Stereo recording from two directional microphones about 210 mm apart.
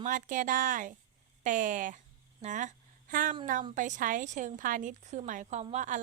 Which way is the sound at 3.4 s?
35° right (ahead or behind).